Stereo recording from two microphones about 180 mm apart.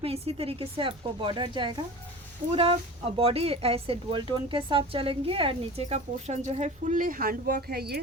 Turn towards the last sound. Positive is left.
turn(degrees=-60)  # may be behind; listen again after turning